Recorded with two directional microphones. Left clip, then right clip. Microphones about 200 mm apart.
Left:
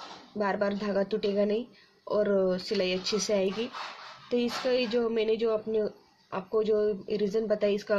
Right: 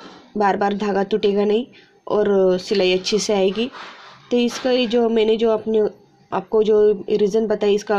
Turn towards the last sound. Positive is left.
turn(degrees=-35)  # may be behind; listen again after turning